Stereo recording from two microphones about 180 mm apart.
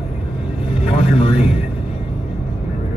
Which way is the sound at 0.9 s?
35° left (ahead or behind).